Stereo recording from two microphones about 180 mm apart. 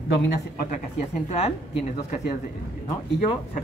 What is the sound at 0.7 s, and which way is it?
Speech, 40° left (ahead or behind).